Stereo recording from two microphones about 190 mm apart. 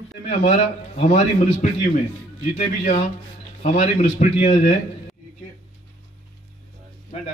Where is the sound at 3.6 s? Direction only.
35° left (ahead or behind).